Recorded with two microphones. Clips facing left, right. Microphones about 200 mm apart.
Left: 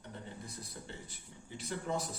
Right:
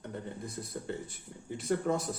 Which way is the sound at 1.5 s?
50° right (ahead or behind).